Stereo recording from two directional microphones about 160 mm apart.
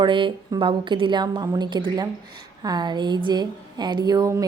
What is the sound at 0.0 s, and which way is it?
A woman's voice, 30° right (ahead or behind).